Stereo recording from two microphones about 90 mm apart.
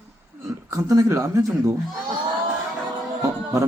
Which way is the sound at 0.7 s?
40° right (ahead or behind).